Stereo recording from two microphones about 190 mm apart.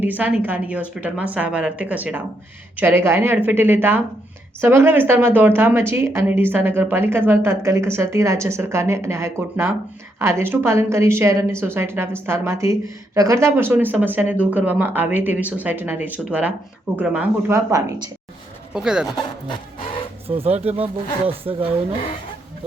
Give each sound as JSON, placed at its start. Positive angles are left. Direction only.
{"t": 0.0, "sound": "a woman's voice", "side_deg": -10}
{"t": 18.7, "sound": "speech", "side_deg": -5}
{"t": 19.5, "sound": "a sound", "side_deg": 30}
{"t": 20.2, "sound": "speech", "side_deg": -30}